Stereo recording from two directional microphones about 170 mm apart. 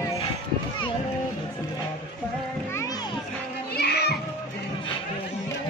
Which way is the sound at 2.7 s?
20° left (ahead or behind).